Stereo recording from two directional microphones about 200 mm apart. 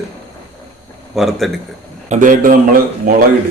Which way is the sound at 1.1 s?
Centre (ahead or behind).